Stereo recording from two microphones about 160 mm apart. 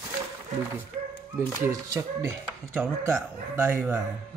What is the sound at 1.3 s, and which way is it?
Speech, 15° right (ahead or behind).